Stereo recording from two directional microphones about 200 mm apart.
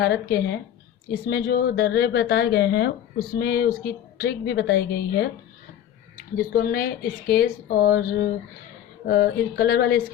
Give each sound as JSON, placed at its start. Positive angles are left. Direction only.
{"t": 0.0, "sound": "speech", "side_deg": 55}